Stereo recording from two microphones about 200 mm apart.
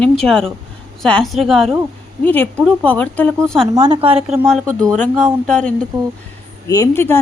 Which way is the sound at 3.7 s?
25° right (ahead or behind).